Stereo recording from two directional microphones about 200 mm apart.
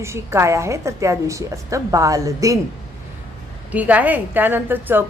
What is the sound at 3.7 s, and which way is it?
A woman's voice, 10° right (ahead or behind).